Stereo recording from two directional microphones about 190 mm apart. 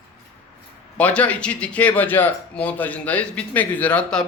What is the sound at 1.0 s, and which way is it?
A man's voice, 5° left (ahead or behind).